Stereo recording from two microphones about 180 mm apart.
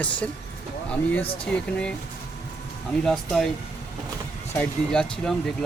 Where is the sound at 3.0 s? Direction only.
5° left (ahead or behind).